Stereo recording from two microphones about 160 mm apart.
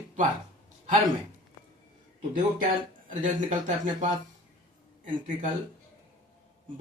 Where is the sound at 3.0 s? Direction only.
50° right (ahead or behind).